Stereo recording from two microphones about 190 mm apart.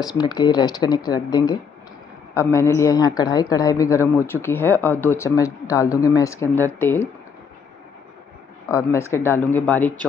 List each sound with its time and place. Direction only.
0.0 s speech: 20° left (ahead or behind)
8.6 s speech: 15° left (ahead or behind)